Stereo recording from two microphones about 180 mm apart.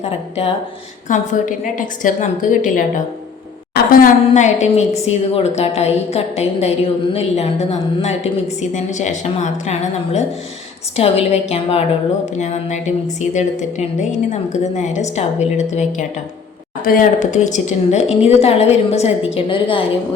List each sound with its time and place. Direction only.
0.0 s a woman's voice: 35° left (ahead or behind)
16.8 s a woman's voice: 50° left (ahead or behind); by 19.8 s 30° left (ahead or behind)